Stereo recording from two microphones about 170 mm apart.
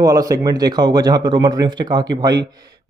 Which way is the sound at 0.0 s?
20° right (ahead or behind).